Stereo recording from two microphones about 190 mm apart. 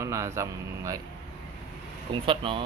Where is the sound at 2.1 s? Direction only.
25° right (ahead or behind).